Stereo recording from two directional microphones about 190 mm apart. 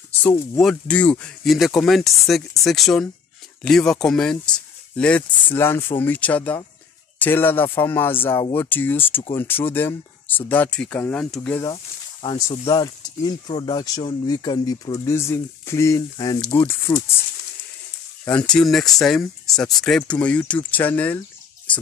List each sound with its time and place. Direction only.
0.6 s speech: 5° left (ahead or behind)
11.7 s speech: 30° left (ahead or behind)
18.2 s speech: 5° left (ahead or behind)